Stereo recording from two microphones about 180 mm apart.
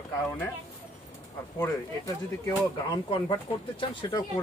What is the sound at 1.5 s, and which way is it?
A woman's voice, 20° left (ahead or behind).